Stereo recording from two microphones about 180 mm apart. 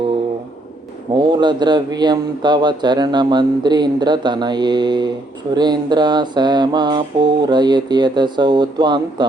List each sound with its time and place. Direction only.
1.1 s speech: 25° right (ahead or behind)